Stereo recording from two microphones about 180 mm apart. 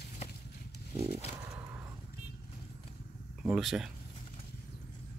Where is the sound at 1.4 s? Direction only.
15° right (ahead or behind).